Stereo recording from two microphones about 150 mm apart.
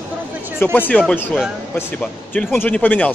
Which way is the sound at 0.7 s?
10° left (ahead or behind).